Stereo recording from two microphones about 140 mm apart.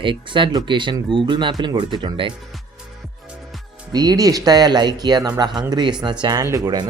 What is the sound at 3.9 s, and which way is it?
Speech, 25° right (ahead or behind).